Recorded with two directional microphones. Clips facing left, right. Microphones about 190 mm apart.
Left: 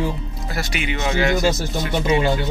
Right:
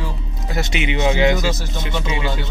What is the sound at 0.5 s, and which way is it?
Speech, 20° right (ahead or behind).